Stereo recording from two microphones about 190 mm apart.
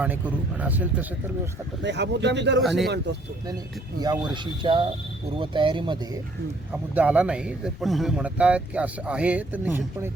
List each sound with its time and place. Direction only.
0.0 s a man's voice: 10° right (ahead or behind)
1.8 s speech: 65° right (ahead or behind)
2.6 s speech: centre (ahead or behind)
2.8 s speech: 60° right (ahead or behind)
4.0 s speech: 20° right (ahead or behind)
6.9 s a man's voice: 10° right (ahead or behind)